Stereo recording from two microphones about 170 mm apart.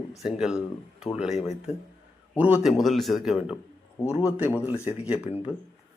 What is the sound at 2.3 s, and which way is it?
Speech, 10° right (ahead or behind).